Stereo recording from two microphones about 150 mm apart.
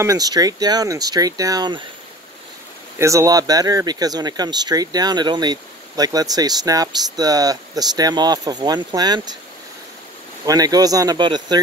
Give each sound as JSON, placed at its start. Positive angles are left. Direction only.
{"t": 0.0, "sound": "speech", "side_deg": -25}
{"t": 3.0, "sound": "speech", "side_deg": -20}
{"t": 10.4, "sound": "speech", "side_deg": -25}